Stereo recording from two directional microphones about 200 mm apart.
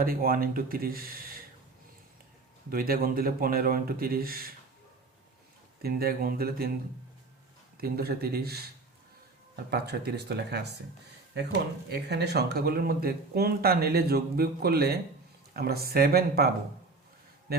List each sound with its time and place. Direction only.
0.0 s speech: 45° right (ahead or behind)
2.6 s speech: 45° right (ahead or behind)
5.8 s speech: 50° right (ahead or behind)
7.8 s speech: 50° right (ahead or behind)
9.6 s speech: 55° right (ahead or behind)
11.9 s speech: 55° right (ahead or behind)
17.5 s a man's voice: 50° right (ahead or behind)